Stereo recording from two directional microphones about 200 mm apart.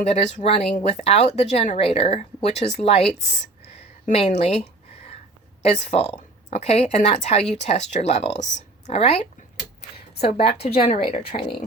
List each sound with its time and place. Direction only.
0.0 s a woman's voice: 35° left (ahead or behind)